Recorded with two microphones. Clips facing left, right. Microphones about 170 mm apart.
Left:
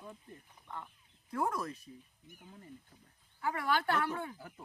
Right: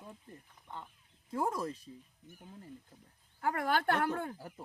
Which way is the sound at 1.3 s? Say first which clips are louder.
Right 1 dB; 25° right (ahead or behind).